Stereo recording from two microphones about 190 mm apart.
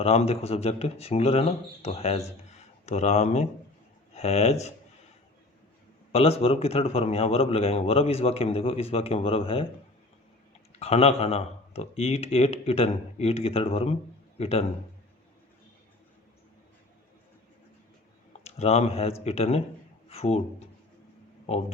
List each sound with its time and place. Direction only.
0.0 s a man's voice: 35° left (ahead or behind)
6.1 s a man's voice: 30° left (ahead or behind)
10.8 s a man's voice: 35° left (ahead or behind)
18.4 s a man's voice: 35° left (ahead or behind)